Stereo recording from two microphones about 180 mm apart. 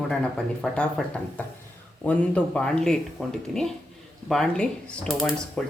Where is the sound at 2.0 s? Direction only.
5° left (ahead or behind).